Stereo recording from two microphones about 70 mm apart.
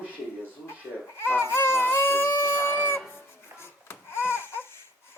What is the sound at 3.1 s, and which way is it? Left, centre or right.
Music, left.